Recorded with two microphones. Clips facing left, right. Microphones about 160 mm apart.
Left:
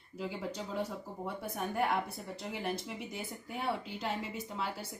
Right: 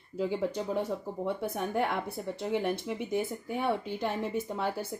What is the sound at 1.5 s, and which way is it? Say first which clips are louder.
Speech: right 2 dB; 60° right (ahead or behind).